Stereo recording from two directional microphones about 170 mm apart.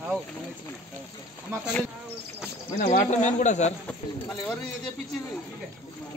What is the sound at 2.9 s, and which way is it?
Speech, 45° left (ahead or behind).